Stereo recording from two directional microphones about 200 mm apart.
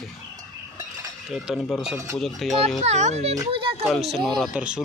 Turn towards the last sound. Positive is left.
turn(degrees=-5)  # may be behind; listen again after turning